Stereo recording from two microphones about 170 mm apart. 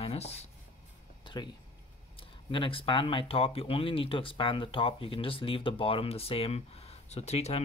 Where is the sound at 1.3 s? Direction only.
25° left (ahead or behind).